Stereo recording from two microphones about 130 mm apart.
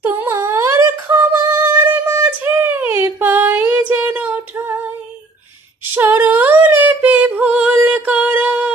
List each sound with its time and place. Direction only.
0.0 s humming: 15° right (ahead or behind)
5.9 s singing: 15° right (ahead or behind)